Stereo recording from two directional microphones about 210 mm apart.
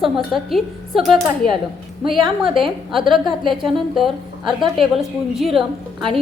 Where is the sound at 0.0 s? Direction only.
Centre (ahead or behind).